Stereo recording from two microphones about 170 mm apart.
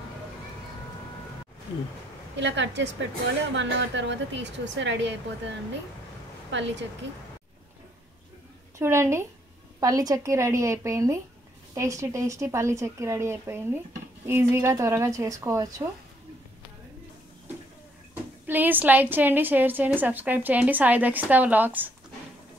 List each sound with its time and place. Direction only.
2.3 s a woman's voice: 90° right
6.5 s a woman's voice: 90° right
8.7 s a woman's voice: 15° right (ahead or behind)
18.5 s a woman's voice: 10° right (ahead or behind)